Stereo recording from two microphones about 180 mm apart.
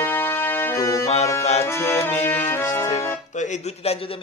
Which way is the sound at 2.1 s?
40° left (ahead or behind).